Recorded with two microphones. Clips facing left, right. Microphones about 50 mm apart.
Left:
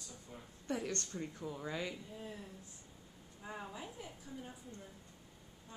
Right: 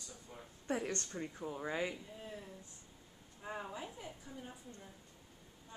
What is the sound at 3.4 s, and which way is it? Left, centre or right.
A woman's voice, centre.